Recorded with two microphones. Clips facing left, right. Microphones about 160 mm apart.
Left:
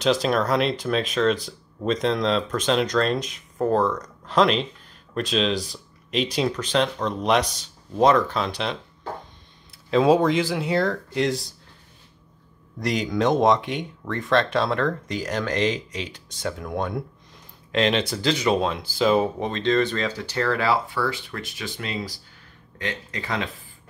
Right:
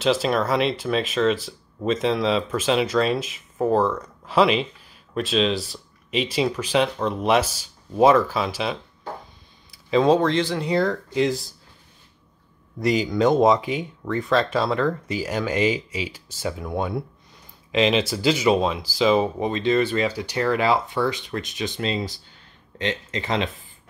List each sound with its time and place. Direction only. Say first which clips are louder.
0.0 s speech: even; centre (ahead or behind)
12.7 s speech: right 3 dB; centre (ahead or behind); by 23.5 s 20° right (ahead or behind)